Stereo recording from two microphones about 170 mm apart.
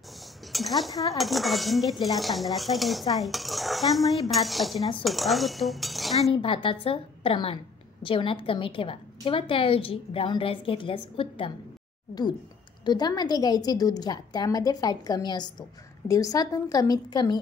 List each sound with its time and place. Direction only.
0.5 s cutlery: centre (ahead or behind)
6.3 s a woman's voice: 30° left (ahead or behind)
12.8 s a woman's voice: 25° left (ahead or behind)